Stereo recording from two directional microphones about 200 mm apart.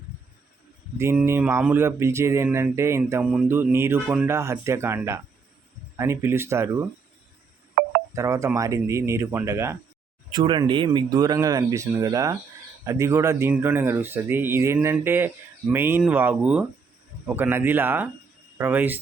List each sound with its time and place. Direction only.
0.9 s speech: 15° right (ahead or behind)
8.1 s speech: 15° right (ahead or behind)